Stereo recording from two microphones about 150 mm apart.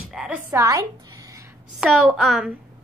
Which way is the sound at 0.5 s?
25° right (ahead or behind).